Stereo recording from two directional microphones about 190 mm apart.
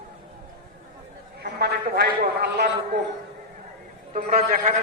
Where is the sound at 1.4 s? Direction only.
60° right (ahead or behind).